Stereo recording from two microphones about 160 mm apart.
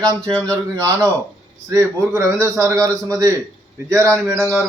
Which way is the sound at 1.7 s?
20° right (ahead or behind).